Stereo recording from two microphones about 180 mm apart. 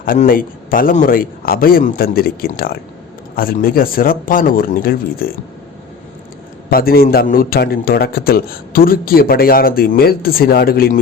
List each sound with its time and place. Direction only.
0.0 s a man's voice: 50° left (ahead or behind)
6.7 s a man's voice: 55° left (ahead or behind)